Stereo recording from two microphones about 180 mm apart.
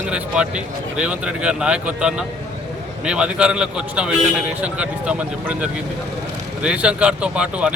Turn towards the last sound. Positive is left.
turn(degrees=-5)  # may be behind; listen again after turning